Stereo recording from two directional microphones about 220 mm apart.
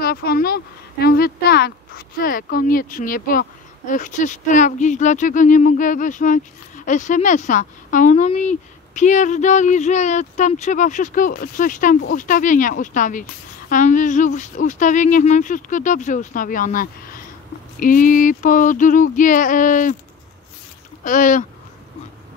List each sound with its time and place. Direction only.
0.0 s speech: 45° left (ahead or behind)
21.0 s speech: 35° left (ahead or behind)